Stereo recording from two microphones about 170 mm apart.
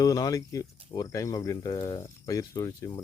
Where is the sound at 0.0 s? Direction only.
20° left (ahead or behind).